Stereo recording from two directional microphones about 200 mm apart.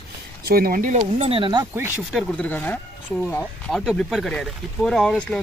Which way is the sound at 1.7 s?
10° right (ahead or behind).